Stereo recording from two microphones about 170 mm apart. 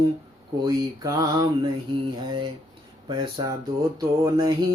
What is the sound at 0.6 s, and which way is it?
Speech, 25° right (ahead or behind).